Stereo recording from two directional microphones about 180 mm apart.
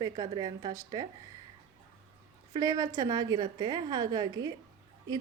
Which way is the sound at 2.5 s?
20° right (ahead or behind).